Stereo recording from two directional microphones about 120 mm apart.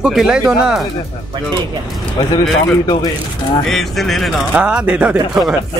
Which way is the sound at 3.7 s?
Centre (ahead or behind).